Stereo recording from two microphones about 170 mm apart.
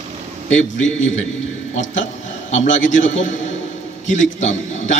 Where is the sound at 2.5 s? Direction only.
45° left (ahead or behind).